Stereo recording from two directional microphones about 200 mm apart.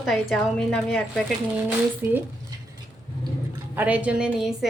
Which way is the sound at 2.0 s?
15° right (ahead or behind).